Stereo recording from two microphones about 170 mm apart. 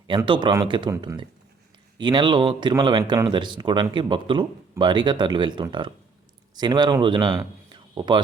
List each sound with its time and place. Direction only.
0.1 s speech: 25° right (ahead or behind)